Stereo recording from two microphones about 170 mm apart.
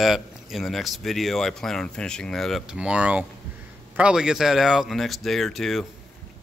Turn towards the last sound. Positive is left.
turn(degrees=0)  # may be behind; listen again after turning